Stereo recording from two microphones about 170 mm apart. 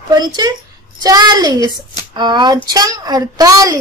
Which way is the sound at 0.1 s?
25° right (ahead or behind).